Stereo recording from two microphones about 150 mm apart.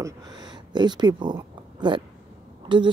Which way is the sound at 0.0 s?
25° right (ahead or behind).